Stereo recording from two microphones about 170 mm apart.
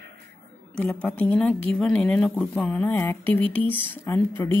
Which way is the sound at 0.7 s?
10° left (ahead or behind).